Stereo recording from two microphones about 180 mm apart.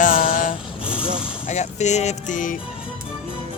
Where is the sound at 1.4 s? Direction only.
40° left (ahead or behind).